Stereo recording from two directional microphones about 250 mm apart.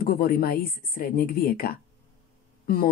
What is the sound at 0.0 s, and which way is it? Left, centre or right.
Speech, left.